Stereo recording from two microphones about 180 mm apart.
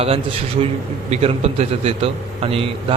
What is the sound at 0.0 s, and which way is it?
A man's voice, 35° right (ahead or behind).